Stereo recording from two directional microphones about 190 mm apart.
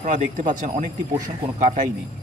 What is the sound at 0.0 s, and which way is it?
Speech, 40° right (ahead or behind).